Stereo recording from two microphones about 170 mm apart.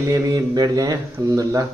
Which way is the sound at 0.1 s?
20° right (ahead or behind).